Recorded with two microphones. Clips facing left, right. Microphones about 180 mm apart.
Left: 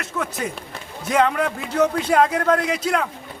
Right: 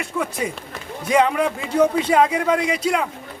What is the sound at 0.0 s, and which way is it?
A man's voice, 10° right (ahead or behind).